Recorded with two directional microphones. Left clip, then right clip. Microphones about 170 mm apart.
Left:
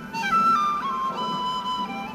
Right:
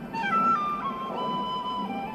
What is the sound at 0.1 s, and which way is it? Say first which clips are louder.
Music: left 3 dB; 50° left (ahead or behind).